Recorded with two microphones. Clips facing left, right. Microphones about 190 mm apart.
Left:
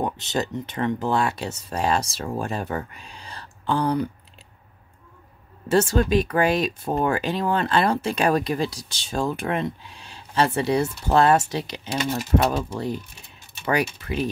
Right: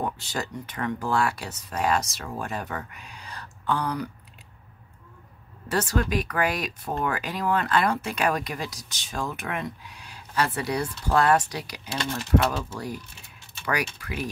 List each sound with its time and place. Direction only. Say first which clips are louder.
0.0 s speech: left 5 dB; 20° left (ahead or behind)
5.7 s speech: left 6 dB; 25° left (ahead or behind)
12.0 s speech: left 2 dB; 10° left (ahead or behind)
14.0 s speech: left 6 dB; 25° left (ahead or behind)